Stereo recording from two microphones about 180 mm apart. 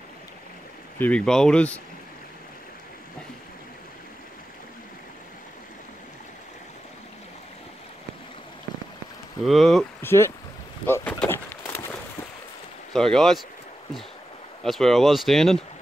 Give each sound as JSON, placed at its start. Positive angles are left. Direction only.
{"t": 0.9, "sound": "speech", "side_deg": 10}
{"t": 9.4, "sound": "speech", "side_deg": 0}
{"t": 10.0, "sound": "speech", "side_deg": 15}
{"t": 10.9, "sound": "a sound", "side_deg": 10}
{"t": 12.9, "sound": "speech", "side_deg": 0}
{"t": 14.6, "sound": "speech", "side_deg": 0}